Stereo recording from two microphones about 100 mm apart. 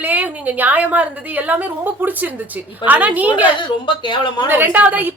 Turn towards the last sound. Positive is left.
turn(degrees=-20)  # may be behind; listen again after turning